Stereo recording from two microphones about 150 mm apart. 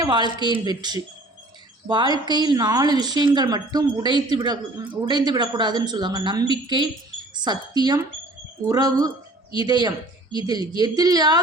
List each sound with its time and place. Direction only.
0.0 s speech: 30° right (ahead or behind)